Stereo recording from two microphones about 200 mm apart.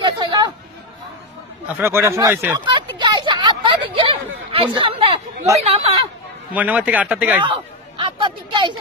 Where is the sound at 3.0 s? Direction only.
25° right (ahead or behind).